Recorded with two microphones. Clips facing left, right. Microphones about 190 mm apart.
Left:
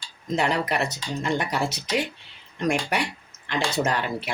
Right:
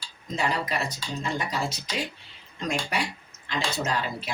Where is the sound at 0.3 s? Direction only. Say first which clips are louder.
Left 4 dB; 65° left (ahead or behind).